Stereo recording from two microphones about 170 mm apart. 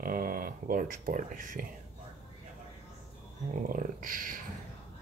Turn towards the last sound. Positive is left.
turn(degrees=-55)  # may be behind; listen again after turning